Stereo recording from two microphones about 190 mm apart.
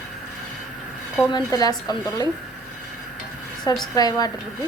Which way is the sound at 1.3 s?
20° left (ahead or behind).